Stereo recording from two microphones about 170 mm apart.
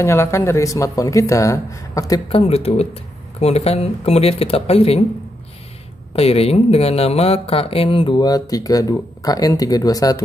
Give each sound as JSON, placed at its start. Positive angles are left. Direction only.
{"t": 0.0, "sound": "speech", "side_deg": 15}
{"t": 2.2, "sound": "speech", "side_deg": 35}
{"t": 6.1, "sound": "speech", "side_deg": 35}